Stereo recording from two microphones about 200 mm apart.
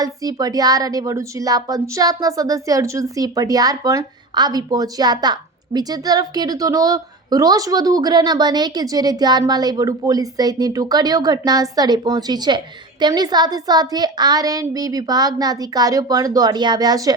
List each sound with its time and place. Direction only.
0.0 s a woman's voice: 20° right (ahead or behind)